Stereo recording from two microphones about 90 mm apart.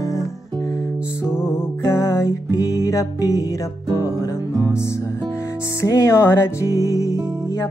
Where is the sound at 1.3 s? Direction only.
25° left (ahead or behind).